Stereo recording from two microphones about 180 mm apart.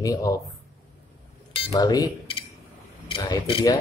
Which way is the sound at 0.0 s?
20° left (ahead or behind).